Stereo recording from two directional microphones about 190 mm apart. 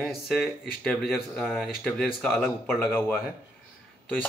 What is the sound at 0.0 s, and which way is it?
Speech, centre (ahead or behind).